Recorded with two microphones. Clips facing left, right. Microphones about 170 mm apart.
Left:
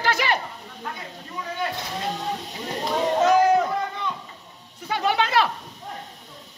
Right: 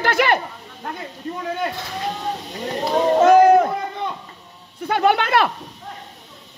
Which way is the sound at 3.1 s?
55° right (ahead or behind).